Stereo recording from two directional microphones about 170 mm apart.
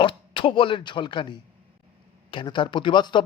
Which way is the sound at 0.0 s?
30° left (ahead or behind).